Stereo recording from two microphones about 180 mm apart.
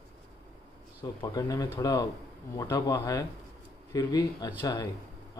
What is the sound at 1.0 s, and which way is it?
A man's voice, 20° left (ahead or behind).